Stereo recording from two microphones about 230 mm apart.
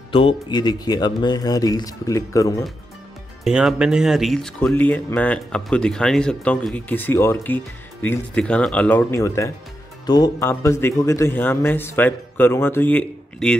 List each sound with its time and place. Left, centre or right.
0.1 s speech: left
3.4 s speech: centre